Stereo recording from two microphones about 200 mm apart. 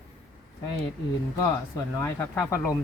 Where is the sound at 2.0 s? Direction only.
10° left (ahead or behind).